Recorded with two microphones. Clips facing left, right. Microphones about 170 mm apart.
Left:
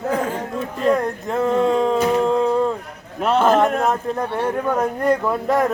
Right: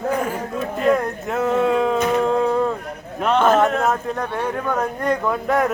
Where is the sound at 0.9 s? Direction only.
5° right (ahead or behind).